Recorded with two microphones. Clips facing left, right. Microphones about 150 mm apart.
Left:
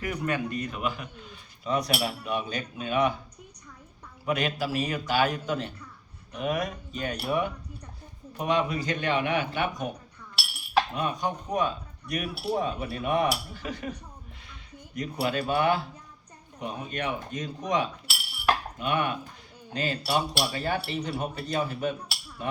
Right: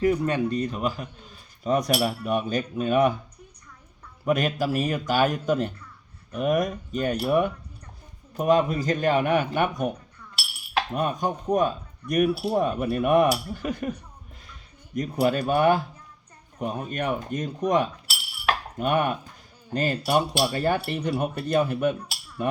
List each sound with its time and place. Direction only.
0.0 s a man's voice: 30° right (ahead or behind); by 3.2 s 45° right (ahead or behind)
4.3 s a man's voice: 45° right (ahead or behind)
10.9 s a man's voice: 50° right (ahead or behind)
14.9 s a man's voice: 45° right (ahead or behind)